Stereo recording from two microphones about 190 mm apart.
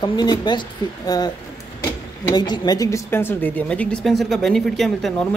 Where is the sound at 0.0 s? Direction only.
20° left (ahead or behind).